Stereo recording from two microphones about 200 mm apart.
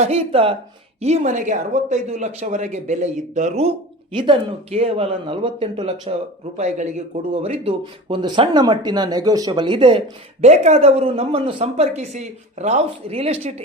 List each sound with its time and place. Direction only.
0.0 s speech: 30° right (ahead or behind)